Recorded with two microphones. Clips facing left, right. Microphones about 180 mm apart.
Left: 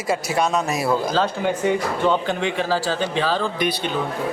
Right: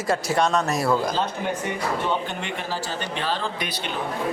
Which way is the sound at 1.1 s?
90° left.